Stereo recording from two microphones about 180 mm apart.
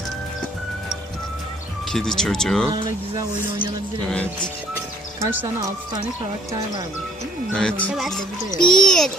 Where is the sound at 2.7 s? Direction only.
25° right (ahead or behind).